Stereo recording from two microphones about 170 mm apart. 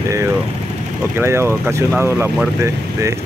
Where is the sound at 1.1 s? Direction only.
15° right (ahead or behind).